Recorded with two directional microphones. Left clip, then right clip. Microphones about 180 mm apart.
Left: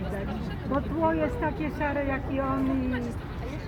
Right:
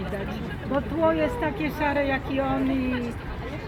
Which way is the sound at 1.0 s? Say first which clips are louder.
Right 4 dB; 45° right (ahead or behind).